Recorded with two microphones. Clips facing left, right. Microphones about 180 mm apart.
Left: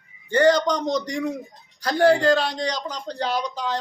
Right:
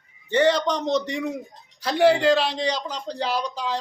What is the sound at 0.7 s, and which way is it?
Speech, 25° right (ahead or behind).